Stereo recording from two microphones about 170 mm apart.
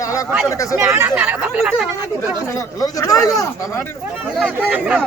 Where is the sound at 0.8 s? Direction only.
10° right (ahead or behind).